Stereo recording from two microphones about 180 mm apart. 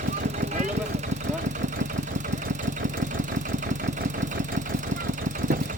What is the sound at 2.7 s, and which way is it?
Engine, 45° right (ahead or behind).